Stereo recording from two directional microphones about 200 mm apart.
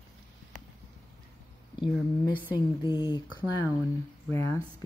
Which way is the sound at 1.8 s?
25° left (ahead or behind).